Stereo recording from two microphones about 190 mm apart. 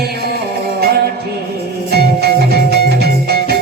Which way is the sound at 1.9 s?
55° right (ahead or behind).